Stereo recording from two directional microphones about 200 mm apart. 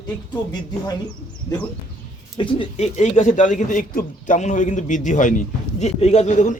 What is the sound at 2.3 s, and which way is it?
A man's voice, 25° left (ahead or behind).